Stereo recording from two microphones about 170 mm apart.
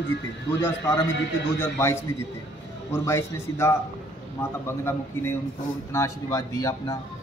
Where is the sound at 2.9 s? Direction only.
15° left (ahead or behind).